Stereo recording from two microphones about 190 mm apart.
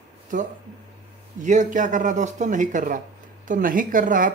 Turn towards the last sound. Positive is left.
turn(degrees=-45)  # may be behind; listen again after turning